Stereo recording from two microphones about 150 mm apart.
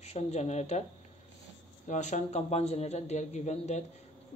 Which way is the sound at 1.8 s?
50° left (ahead or behind).